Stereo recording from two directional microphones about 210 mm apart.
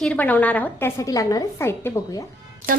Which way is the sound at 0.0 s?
5° left (ahead or behind).